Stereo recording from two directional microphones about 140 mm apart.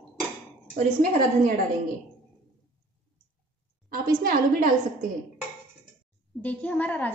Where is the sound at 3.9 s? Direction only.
90° right.